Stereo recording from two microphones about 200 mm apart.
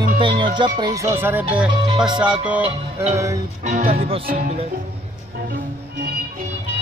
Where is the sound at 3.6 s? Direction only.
40° right (ahead or behind).